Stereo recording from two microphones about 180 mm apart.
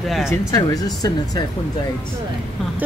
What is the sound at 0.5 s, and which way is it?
Speech, 20° left (ahead or behind).